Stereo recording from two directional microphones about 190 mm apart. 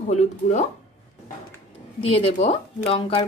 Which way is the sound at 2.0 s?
30° left (ahead or behind).